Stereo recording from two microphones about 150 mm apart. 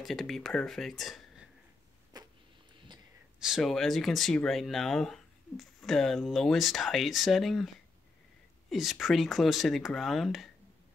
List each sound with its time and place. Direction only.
0.0 s speech: centre (ahead or behind)
2.1 s a sound: 25° right (ahead or behind)
3.3 s speech: 5° right (ahead or behind)